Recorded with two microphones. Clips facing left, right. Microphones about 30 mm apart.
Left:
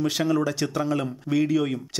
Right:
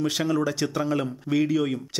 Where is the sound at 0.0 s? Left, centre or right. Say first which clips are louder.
Left 1 dB; centre.